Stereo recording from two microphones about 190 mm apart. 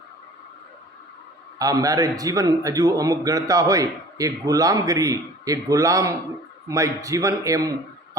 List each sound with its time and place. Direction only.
1.5 s a man's voice: 20° right (ahead or behind)